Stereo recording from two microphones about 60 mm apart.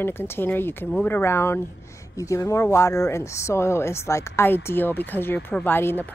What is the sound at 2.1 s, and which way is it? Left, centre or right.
A woman's voice, left.